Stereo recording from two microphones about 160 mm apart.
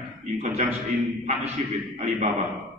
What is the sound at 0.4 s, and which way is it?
A man's voice, 40° right (ahead or behind).